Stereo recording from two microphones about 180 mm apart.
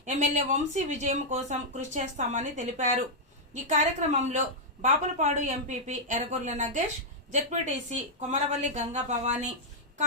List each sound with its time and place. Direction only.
0.0 s a woman's voice: 40° right (ahead or behind)